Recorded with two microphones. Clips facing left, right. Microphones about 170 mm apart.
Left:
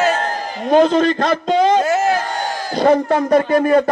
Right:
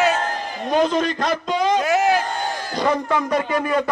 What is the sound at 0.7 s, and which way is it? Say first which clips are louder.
A man's voice: left 7 dB; 30° left (ahead or behind).